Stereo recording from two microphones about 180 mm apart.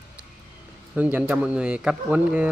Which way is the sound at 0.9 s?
10° right (ahead or behind).